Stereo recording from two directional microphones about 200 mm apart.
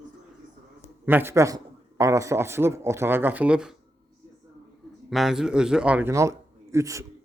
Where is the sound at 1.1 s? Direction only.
10° right (ahead or behind).